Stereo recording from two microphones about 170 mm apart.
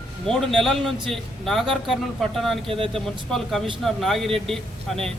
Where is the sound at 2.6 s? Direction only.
30° right (ahead or behind).